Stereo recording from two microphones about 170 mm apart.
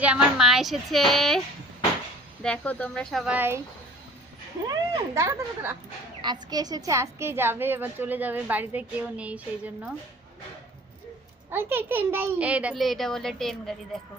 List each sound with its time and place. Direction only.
0.0 s a woman's voice: 5° right (ahead or behind)
2.4 s a woman's voice: 5° left (ahead or behind)
3.3 s a woman's voice: 15° right (ahead or behind)
4.7 s a woman's voice: 20° right (ahead or behind)
11.5 s a woman's voice: 15° right (ahead or behind)